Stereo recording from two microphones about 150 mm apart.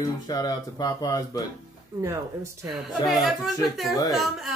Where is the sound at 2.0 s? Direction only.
20° right (ahead or behind).